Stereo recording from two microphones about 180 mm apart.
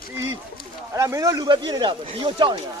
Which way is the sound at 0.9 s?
15° right (ahead or behind).